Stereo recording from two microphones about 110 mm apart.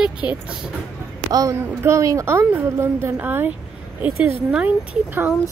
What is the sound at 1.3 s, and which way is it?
A woman's voice, 30° right (ahead or behind).